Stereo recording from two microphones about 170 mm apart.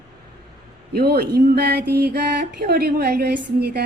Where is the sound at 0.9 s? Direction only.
70° right (ahead or behind).